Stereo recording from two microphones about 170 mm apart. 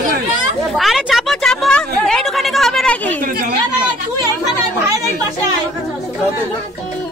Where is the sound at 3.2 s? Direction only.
60° right (ahead or behind).